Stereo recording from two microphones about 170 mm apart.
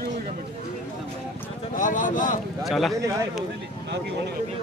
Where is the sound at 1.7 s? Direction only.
50° left (ahead or behind).